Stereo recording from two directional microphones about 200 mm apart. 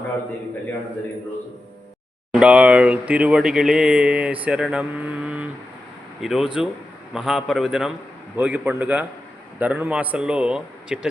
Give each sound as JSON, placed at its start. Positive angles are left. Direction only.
{"t": 2.3, "sound": "a man's voice", "side_deg": -5}